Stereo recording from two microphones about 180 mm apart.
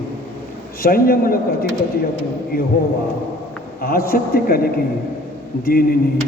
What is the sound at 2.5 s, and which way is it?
Speech, 55° left (ahead or behind).